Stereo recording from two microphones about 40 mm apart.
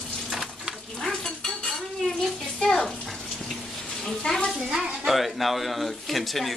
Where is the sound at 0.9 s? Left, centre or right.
Centre.